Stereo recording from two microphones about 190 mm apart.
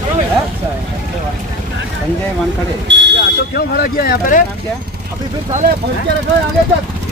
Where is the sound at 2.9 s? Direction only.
70° right (ahead or behind).